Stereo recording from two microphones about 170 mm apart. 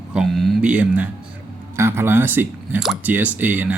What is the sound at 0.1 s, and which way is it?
Speech, centre (ahead or behind).